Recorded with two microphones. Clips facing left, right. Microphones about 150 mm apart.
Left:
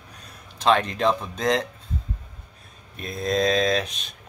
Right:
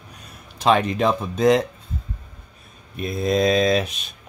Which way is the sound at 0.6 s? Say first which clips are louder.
Right 2 dB; 10° right (ahead or behind).